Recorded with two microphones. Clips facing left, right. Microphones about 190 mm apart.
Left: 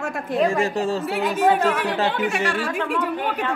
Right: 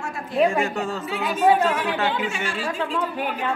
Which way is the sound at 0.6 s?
30° left (ahead or behind).